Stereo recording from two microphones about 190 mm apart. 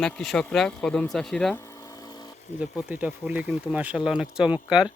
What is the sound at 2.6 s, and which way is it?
Speech, 5° right (ahead or behind).